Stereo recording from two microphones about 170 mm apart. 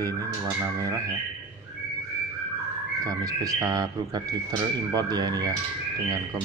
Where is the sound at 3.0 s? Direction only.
20° right (ahead or behind).